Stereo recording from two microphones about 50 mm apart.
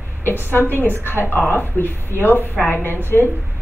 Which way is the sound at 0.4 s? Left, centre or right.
Left.